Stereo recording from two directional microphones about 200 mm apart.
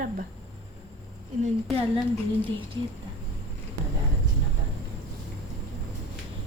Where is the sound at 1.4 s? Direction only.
30° right (ahead or behind).